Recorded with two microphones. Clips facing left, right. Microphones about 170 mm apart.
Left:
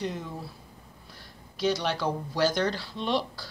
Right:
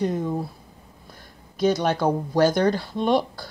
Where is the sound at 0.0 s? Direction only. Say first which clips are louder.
Right 9 dB; 45° right (ahead or behind).